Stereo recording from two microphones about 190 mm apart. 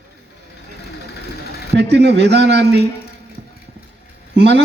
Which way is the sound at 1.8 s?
65° right (ahead or behind).